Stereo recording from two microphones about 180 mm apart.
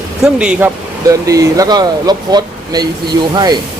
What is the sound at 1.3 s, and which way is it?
Speech, 20° right (ahead or behind).